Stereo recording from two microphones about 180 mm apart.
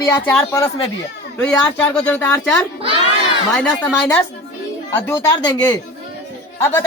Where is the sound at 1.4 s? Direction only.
5° left (ahead or behind).